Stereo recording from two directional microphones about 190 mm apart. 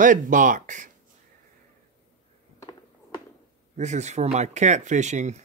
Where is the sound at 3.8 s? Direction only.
35° right (ahead or behind).